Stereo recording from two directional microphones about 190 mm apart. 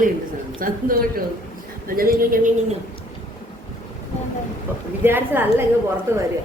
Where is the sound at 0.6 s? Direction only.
50° right (ahead or behind).